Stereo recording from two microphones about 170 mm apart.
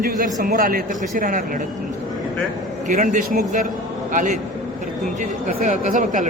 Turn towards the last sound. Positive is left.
turn(degrees=-50)  # may be behind; listen again after turning